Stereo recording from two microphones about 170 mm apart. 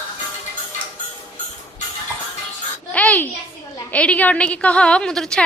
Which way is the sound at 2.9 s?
10° left (ahead or behind).